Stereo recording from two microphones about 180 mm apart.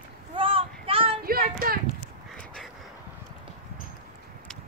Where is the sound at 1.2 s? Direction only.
55° right (ahead or behind).